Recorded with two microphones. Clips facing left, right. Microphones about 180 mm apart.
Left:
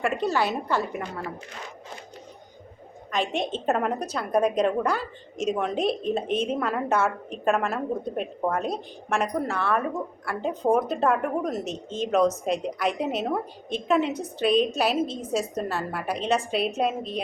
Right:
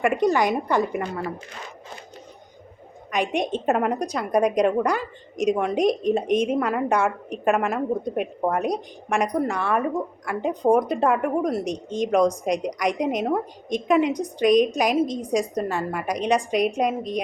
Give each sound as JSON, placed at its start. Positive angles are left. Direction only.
{"t": 0.0, "sound": "a woman's voice", "side_deg": -15}
{"t": 3.1, "sound": "a woman's voice", "side_deg": -15}